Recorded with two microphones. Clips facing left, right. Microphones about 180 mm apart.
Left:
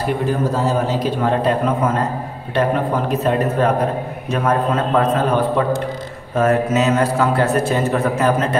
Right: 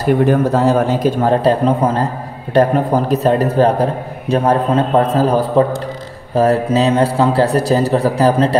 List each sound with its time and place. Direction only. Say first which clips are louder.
0.3 s a man's voice: right 6 dB; 65° right (ahead or behind); by 8.5 s 35° right (ahead or behind)